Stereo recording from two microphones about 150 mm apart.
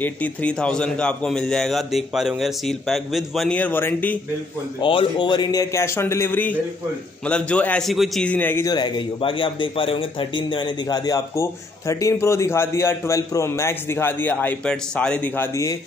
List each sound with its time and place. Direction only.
0.0 s a man's voice: 10° left (ahead or behind)
3.5 s a man's voice: 10° left (ahead or behind)
4.7 s a man's voice: 30° left (ahead or behind); by 8.6 s 10° left (ahead or behind)
8.6 s speech: 30° left (ahead or behind)